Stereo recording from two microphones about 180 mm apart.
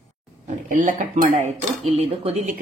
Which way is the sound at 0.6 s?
45° right (ahead or behind).